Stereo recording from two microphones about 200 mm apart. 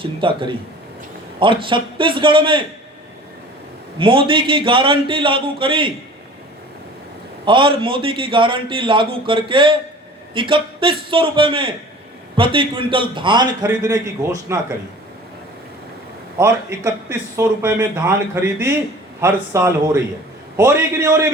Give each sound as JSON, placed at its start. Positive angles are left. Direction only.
{"t": 0.0, "sound": "a man's voice", "side_deg": -25}
{"t": 3.9, "sound": "a man's voice", "side_deg": -25}
{"t": 7.4, "sound": "a man's voice", "side_deg": -25}
{"t": 16.4, "sound": "speech", "side_deg": -15}
{"t": 19.2, "sound": "speech", "side_deg": -15}